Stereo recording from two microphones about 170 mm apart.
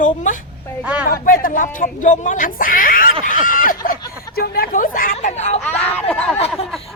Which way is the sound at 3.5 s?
55° left (ahead or behind).